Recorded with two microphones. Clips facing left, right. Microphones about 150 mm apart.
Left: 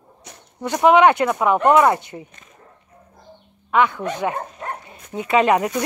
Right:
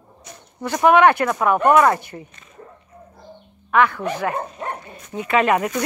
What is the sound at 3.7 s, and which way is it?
Speech, 20° left (ahead or behind).